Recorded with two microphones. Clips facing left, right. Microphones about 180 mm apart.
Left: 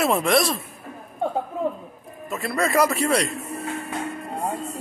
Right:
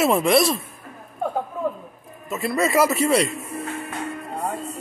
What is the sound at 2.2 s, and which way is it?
A man's voice, centre (ahead or behind).